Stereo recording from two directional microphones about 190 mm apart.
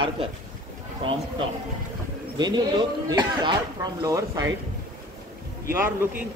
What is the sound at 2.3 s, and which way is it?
A man's voice, 20° right (ahead or behind).